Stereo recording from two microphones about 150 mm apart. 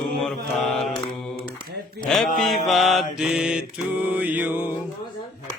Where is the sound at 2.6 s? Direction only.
Centre (ahead or behind).